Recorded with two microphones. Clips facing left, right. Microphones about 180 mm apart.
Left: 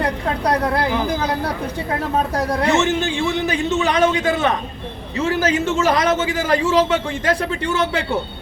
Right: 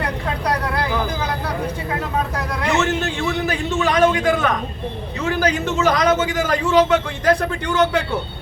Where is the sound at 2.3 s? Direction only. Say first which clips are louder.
Left 5 dB; 35° left (ahead or behind).